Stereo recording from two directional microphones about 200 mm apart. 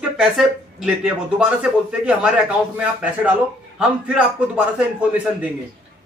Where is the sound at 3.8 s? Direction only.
5° right (ahead or behind).